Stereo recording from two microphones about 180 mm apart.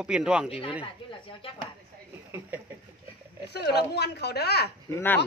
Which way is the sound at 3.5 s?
65° left (ahead or behind).